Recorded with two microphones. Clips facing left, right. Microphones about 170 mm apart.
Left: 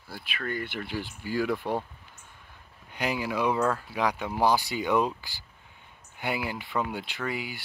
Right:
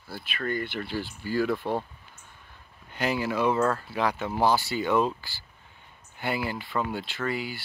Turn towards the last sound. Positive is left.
turn(degrees=15)  # may be behind; listen again after turning